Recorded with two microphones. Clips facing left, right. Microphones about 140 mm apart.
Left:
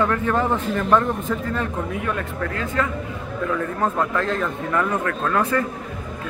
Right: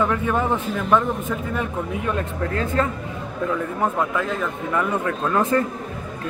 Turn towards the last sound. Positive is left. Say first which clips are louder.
# right 1 dB
turn(degrees=-20)  # may be behind; listen again after turning